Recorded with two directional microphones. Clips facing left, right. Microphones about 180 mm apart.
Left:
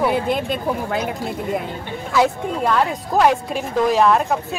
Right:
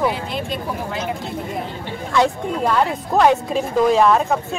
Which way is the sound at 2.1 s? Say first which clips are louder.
Even; centre (ahead or behind).